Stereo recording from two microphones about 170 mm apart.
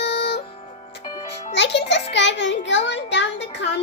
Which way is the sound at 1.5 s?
90° left.